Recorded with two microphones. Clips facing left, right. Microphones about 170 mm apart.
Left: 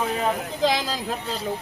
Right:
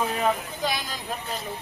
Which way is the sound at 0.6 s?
90° left.